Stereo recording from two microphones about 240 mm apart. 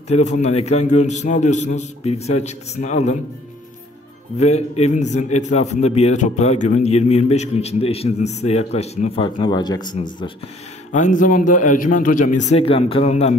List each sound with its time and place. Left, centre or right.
0.1 s a man's voice: left
4.4 s a man's voice: left
10.9 s a man's voice: left